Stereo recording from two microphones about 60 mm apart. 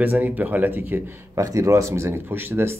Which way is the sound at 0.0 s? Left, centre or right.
Right.